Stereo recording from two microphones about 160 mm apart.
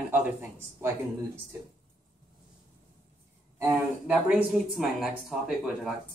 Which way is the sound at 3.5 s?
15° right (ahead or behind).